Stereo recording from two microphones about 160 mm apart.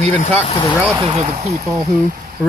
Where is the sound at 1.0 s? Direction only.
40° right (ahead or behind).